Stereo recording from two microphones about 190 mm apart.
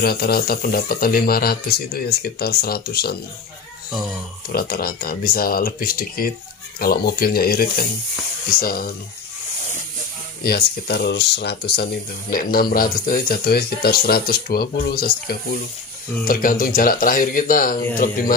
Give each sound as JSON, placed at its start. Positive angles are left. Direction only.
{"t": 0.0, "sound": "speech", "side_deg": 50}
{"t": 4.5, "sound": "speech", "side_deg": 50}
{"t": 10.4, "sound": "speech", "side_deg": 55}